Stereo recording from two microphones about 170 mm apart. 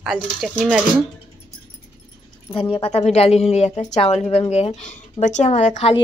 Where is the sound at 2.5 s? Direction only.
30° left (ahead or behind).